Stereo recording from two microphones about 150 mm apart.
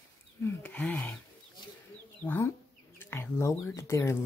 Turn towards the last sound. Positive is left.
turn(degrees=20)  # may be behind; listen again after turning